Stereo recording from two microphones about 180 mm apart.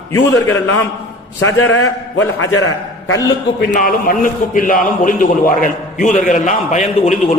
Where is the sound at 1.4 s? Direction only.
90° left.